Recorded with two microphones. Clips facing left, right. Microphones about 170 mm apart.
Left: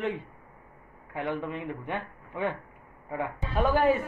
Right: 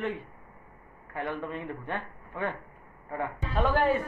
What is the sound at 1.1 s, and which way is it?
A man's voice, 15° left (ahead or behind).